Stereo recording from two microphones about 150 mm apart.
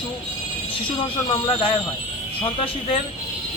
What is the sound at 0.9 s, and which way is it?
Speech, 35° left (ahead or behind).